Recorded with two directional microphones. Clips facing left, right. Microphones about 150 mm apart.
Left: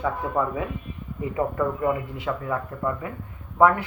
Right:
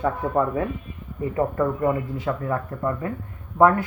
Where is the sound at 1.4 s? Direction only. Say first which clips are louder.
Right 2 dB; 30° right (ahead or behind).